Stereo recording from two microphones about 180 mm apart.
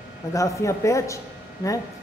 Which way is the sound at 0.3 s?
15° left (ahead or behind).